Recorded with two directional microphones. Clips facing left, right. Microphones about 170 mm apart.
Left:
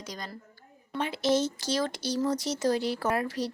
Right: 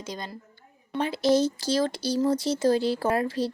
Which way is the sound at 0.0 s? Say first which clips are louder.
Right 4 dB; 25° right (ahead or behind).